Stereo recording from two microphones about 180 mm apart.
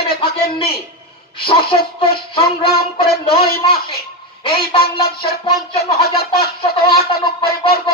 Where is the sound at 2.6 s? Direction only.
60° left (ahead or behind).